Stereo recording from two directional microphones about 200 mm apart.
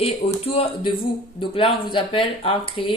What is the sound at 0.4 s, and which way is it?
Speech, 30° left (ahead or behind).